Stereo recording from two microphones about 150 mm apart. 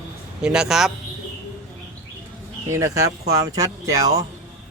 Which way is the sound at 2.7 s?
20° right (ahead or behind).